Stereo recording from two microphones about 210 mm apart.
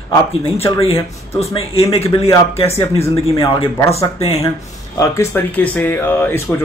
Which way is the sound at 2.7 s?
15° left (ahead or behind).